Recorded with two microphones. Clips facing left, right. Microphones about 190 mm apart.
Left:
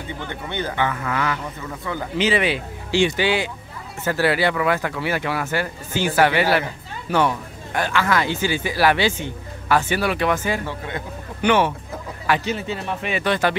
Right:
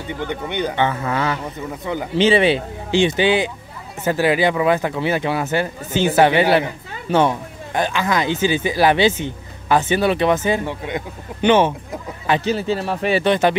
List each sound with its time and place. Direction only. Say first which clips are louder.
0.2 s speech: right 6 dB; 15° right (ahead or behind)
12.4 s speech: right 5 dB; 35° right (ahead or behind)
13.2 s speech: right 3 dB; 20° right (ahead or behind)